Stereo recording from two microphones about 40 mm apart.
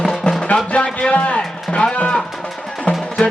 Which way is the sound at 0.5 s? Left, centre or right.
Left.